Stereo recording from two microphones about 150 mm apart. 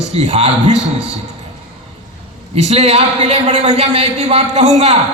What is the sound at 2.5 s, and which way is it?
A man's voice, 45° right (ahead or behind).